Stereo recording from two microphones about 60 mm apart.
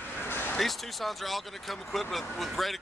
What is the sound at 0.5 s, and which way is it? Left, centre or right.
Speech, centre.